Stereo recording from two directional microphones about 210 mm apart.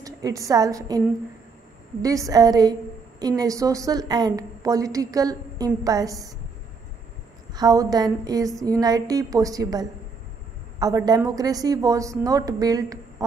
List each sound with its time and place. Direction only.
0.0 s a woman's voice: 15° right (ahead or behind)
7.5 s a woman's voice: 15° right (ahead or behind)